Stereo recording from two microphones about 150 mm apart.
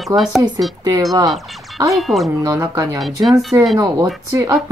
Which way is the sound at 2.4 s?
20° right (ahead or behind).